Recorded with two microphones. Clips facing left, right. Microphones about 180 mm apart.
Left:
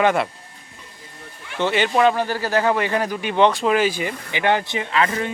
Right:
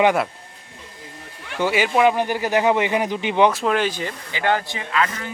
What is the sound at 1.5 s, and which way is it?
Speech, 5° right (ahead or behind).